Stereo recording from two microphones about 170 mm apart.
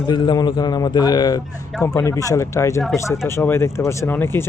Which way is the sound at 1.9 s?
20° left (ahead or behind).